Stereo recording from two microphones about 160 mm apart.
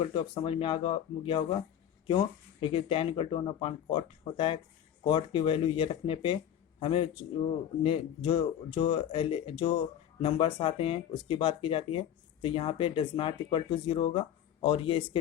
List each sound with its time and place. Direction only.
0.0 s speech: 30° left (ahead or behind)